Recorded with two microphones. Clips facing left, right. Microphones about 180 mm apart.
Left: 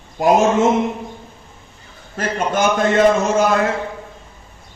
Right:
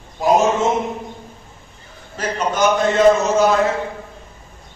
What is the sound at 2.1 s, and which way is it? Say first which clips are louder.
Speech: left 1 dB; 50° left (ahead or behind).